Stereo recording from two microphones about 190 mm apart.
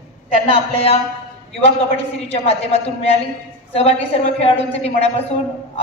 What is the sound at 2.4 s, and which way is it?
Speech, 30° left (ahead or behind).